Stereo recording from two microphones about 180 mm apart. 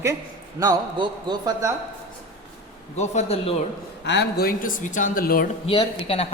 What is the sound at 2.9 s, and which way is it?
Speech, 35° left (ahead or behind).